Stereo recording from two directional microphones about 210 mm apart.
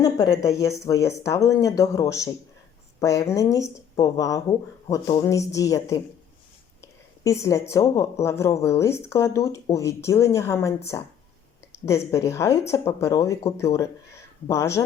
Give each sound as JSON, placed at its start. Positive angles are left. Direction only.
{"t": 0.0, "sound": "speech", "side_deg": 15}
{"t": 6.8, "sound": "a sound", "side_deg": 15}
{"t": 7.7, "sound": "speech", "side_deg": 15}
{"t": 11.9, "sound": "speech", "side_deg": 15}